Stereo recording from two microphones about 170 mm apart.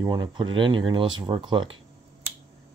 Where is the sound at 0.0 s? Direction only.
25° right (ahead or behind).